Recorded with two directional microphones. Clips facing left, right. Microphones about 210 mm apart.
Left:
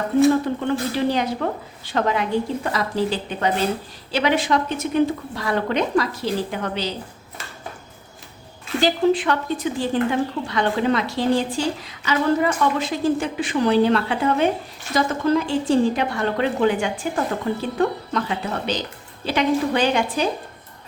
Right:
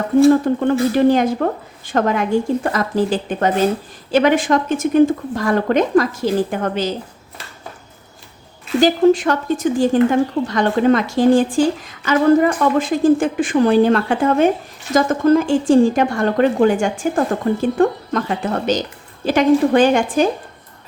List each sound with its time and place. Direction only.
0.4 s speech: 50° right (ahead or behind)
8.8 s speech: 45° right (ahead or behind)